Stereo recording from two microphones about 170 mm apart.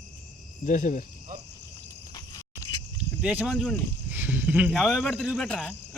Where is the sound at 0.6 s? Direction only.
45° left (ahead or behind).